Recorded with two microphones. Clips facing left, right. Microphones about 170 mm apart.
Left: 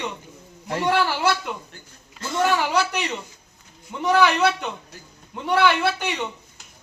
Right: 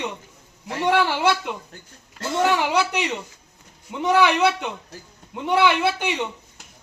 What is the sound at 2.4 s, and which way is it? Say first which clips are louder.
A man's voice: right 1 dB; 20° right (ahead or behind).